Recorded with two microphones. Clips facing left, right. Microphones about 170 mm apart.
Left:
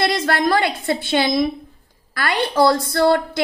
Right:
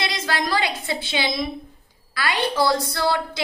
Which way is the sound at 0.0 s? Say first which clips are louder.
Left 7 dB; 55° left (ahead or behind).